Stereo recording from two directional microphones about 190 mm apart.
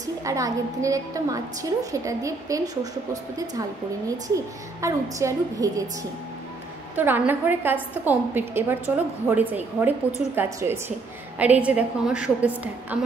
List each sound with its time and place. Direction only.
0.0 s a woman's voice: 15° right (ahead or behind)
4.8 s a woman's voice: 15° right (ahead or behind)
7.0 s a woman's voice: 10° right (ahead or behind)